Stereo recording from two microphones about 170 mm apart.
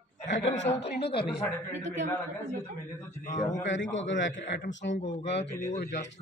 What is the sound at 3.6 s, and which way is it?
A man's voice, 90° left.